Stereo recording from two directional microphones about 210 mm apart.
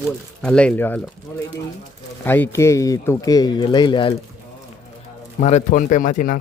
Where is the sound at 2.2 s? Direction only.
10° left (ahead or behind).